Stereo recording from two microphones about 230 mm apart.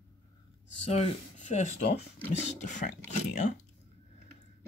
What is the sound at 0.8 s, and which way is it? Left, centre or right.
Speech, left.